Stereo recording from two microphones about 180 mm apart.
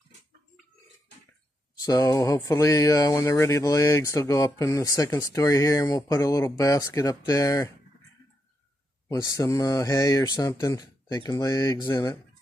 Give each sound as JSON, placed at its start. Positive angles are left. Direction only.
{"t": 1.8, "sound": "speech", "side_deg": 20}
{"t": 9.1, "sound": "speech", "side_deg": 20}